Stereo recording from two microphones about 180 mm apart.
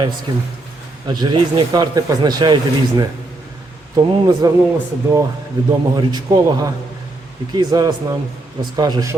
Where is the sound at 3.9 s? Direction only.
20° right (ahead or behind).